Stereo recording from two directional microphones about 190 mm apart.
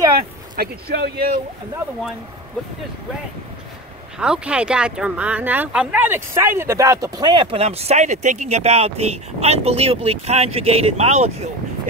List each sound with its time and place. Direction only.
0.6 s speech: 55° right (ahead or behind)
4.2 s speech: 5° right (ahead or behind); by 11.3 s 35° right (ahead or behind)